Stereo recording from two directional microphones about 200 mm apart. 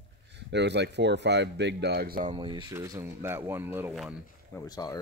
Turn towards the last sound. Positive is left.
turn(degrees=20)  # may be behind; listen again after turning